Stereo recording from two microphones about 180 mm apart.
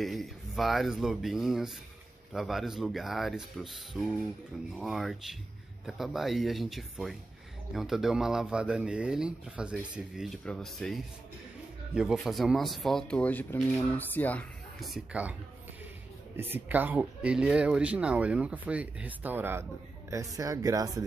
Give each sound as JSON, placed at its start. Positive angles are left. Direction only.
{"t": 0.0, "sound": "speech", "side_deg": 0}
{"t": 16.3, "sound": "speech", "side_deg": -10}